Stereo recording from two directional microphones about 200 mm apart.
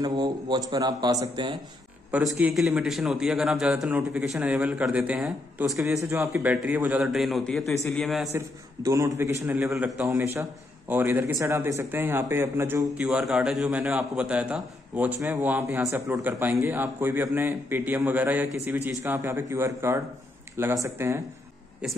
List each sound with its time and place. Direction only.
0.0 s a man's voice: 20° right (ahead or behind)
2.0 s a man's voice: 5° right (ahead or behind)
8.3 s speech: 15° right (ahead or behind)